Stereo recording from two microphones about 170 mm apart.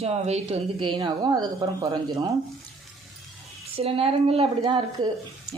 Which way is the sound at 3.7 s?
35° right (ahead or behind).